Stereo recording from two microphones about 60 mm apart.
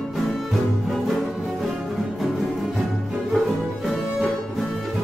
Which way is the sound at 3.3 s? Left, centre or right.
Centre.